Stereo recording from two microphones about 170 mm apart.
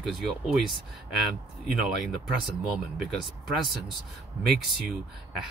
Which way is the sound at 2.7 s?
Centre (ahead or behind).